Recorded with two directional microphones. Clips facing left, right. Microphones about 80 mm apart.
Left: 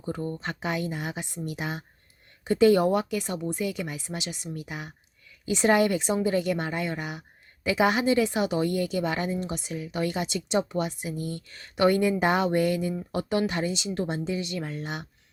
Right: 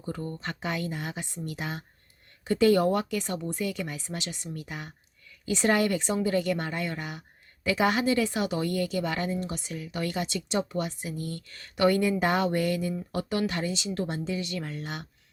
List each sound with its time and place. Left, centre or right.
0.0 s a woman's voice: left